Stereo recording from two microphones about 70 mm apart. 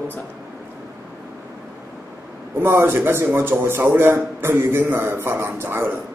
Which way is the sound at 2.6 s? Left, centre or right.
Right.